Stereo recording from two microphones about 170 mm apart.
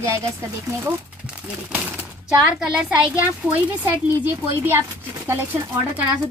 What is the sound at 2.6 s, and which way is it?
Speech, 5° right (ahead or behind).